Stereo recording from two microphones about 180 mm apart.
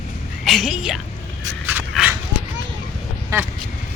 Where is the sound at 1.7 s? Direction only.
10° right (ahead or behind).